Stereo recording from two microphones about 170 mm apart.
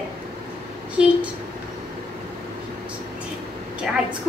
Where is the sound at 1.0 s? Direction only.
5° right (ahead or behind).